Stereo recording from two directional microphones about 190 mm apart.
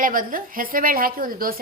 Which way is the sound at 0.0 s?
45° right (ahead or behind).